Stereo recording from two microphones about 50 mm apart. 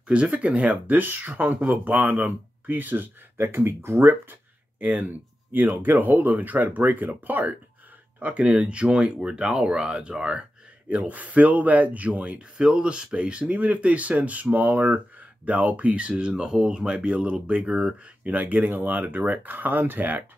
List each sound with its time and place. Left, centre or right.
0.1 s speech: right
3.3 s speech: right
4.1 s speech: right
8.2 s speech: right